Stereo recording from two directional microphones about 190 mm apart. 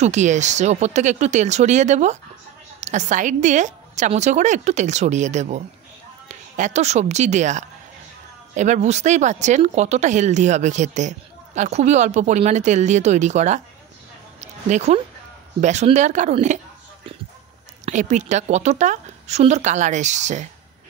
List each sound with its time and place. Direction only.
0.0 s speech: 40° right (ahead or behind)
14.4 s a sound: 35° right (ahead or behind)
15.6 s speech: 35° right (ahead or behind)
17.8 s speech: 40° right (ahead or behind)